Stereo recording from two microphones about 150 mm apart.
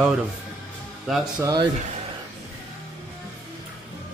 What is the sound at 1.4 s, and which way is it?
Speech, 25° right (ahead or behind).